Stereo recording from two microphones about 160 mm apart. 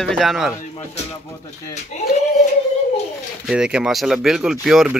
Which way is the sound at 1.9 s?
50° left (ahead or behind).